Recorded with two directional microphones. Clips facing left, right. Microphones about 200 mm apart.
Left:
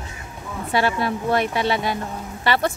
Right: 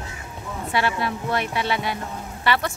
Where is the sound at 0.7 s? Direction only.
40° left (ahead or behind).